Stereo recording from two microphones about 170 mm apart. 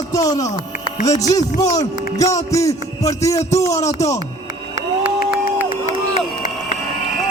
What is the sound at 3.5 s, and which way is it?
Speech, 40° left (ahead or behind).